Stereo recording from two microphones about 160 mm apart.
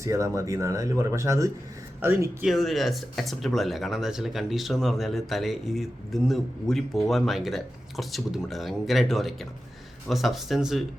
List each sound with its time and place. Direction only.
0.0 s speech: 20° right (ahead or behind)
2.5 s speech: centre (ahead or behind)